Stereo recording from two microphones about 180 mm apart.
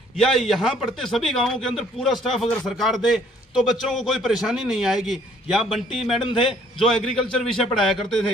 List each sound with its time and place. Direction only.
0.1 s a man's voice: centre (ahead or behind)